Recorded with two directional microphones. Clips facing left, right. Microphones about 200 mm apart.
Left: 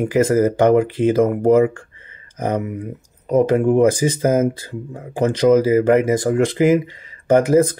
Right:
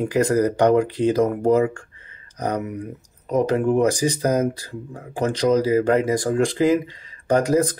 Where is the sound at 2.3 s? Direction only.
25° left (ahead or behind).